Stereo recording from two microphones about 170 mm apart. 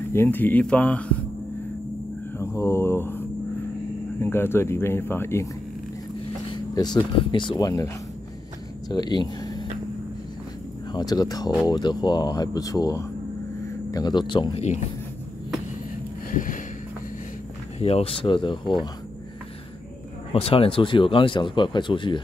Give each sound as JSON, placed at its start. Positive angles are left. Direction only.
{"t": 0.1, "sound": "speech", "side_deg": 10}
{"t": 2.3, "sound": "mantra", "side_deg": 15}
{"t": 4.2, "sound": "speech", "side_deg": 15}
{"t": 6.5, "sound": "a sound", "side_deg": 25}
{"t": 7.0, "sound": "speech", "side_deg": 30}
{"t": 10.9, "sound": "speech", "side_deg": 25}
{"t": 16.3, "sound": "a sound", "side_deg": 50}
{"t": 17.7, "sound": "speech", "side_deg": 35}
{"t": 20.3, "sound": "speech", "side_deg": 35}